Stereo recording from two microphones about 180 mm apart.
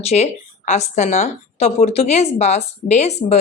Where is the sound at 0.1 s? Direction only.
40° left (ahead or behind).